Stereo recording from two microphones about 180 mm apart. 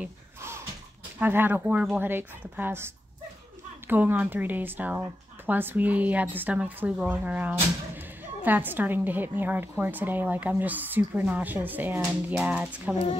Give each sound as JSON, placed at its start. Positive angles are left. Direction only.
{"t": 0.0, "sound": "a sound", "side_deg": -15}
{"t": 1.2, "sound": "a woman's voice", "side_deg": -10}
{"t": 12.9, "sound": "speech", "side_deg": 35}